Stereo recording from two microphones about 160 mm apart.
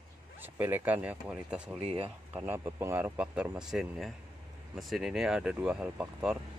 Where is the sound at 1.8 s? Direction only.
35° right (ahead or behind).